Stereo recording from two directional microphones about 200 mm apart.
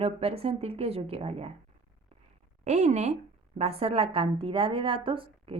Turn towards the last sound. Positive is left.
turn(degrees=-25)  # may be behind; listen again after turning